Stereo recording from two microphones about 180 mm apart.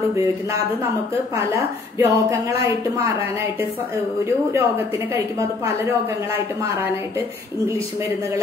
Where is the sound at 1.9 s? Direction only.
15° right (ahead or behind).